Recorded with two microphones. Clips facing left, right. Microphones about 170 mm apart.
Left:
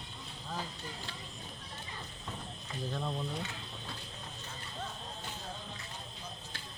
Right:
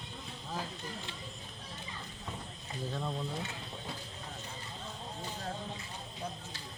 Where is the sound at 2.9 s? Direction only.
Centre (ahead or behind).